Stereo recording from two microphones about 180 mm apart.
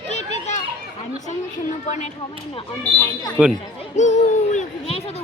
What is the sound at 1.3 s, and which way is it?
Speech, 40° left (ahead or behind).